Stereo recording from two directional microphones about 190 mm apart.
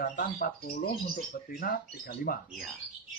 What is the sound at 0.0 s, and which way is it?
Speech, 50° left (ahead or behind).